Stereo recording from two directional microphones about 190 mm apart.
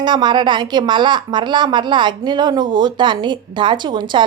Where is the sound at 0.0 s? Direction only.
25° right (ahead or behind).